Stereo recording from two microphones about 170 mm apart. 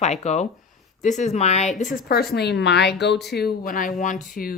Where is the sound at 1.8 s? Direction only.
55° left (ahead or behind).